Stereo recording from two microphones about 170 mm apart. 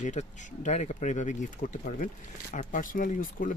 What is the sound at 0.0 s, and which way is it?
Speech, 45° left (ahead or behind).